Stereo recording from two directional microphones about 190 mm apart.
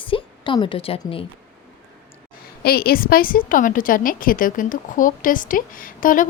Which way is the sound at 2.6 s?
55° left (ahead or behind).